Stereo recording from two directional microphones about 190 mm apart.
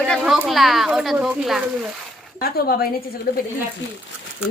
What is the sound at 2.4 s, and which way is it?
Speech, 50° left (ahead or behind).